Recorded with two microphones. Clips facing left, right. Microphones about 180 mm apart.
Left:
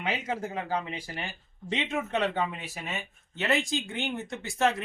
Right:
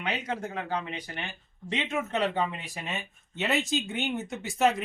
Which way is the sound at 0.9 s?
30° left (ahead or behind).